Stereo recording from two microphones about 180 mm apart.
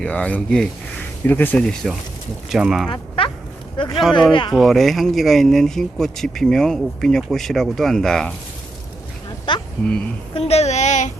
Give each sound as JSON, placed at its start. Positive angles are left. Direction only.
{"t": 0.0, "sound": "speech", "side_deg": 5}
{"t": 2.9, "sound": "a sound", "side_deg": 30}
{"t": 3.8, "sound": "speech", "side_deg": 25}
{"t": 4.5, "sound": "speech", "side_deg": 0}
{"t": 9.5, "sound": "speech", "side_deg": 25}